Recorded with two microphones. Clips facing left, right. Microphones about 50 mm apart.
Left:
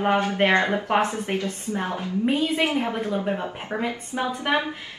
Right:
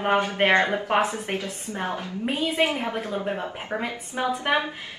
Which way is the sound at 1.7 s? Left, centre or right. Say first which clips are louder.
Left 1 dB; right.